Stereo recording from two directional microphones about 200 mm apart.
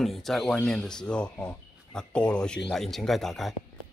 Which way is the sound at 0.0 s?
Centre (ahead or behind).